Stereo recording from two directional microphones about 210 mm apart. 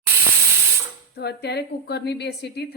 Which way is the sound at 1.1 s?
50° left (ahead or behind).